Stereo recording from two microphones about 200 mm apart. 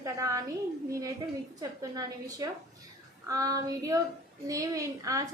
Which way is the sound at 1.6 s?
20° right (ahead or behind).